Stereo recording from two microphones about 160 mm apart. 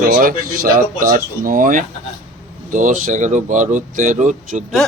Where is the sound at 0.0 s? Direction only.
60° right (ahead or behind).